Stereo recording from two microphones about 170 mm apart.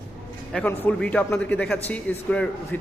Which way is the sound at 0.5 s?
10° left (ahead or behind).